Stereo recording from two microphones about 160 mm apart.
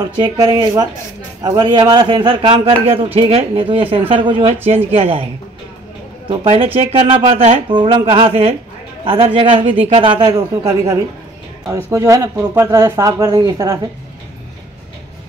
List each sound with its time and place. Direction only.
0.0 s speech: 25° right (ahead or behind)
6.2 s speech: 35° right (ahead or behind)
10.3 s speech: 20° right (ahead or behind)